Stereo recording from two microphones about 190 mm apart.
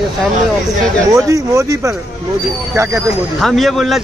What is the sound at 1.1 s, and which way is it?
Speech, 15° right (ahead or behind).